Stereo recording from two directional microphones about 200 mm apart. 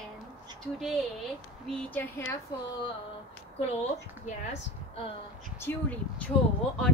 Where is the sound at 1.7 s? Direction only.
5° left (ahead or behind).